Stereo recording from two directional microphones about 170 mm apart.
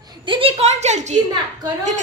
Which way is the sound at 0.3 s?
30° right (ahead or behind).